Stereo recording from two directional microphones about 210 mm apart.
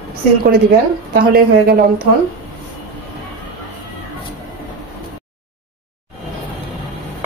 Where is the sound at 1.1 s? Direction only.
45° right (ahead or behind).